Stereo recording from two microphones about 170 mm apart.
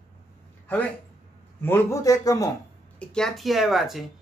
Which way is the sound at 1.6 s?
15° left (ahead or behind).